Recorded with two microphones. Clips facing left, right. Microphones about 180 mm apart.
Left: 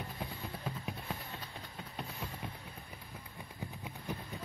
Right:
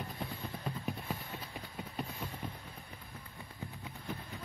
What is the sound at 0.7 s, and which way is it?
Vehicle, centre (ahead or behind).